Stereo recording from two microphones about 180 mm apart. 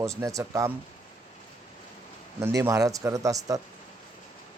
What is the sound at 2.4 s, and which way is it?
Speech, 15° right (ahead or behind).